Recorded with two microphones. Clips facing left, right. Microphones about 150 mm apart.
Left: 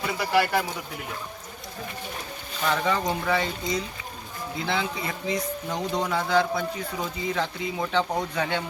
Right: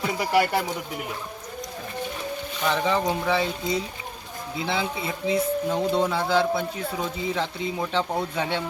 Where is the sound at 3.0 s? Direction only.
5° right (ahead or behind).